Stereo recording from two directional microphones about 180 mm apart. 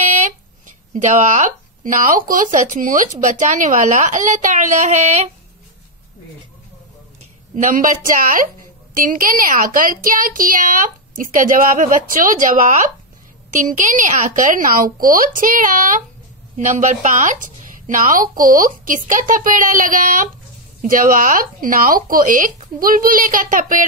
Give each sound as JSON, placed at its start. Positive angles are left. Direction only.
{"t": 0.0, "sound": "speech", "side_deg": -40}
{"t": 7.5, "sound": "speech", "side_deg": -45}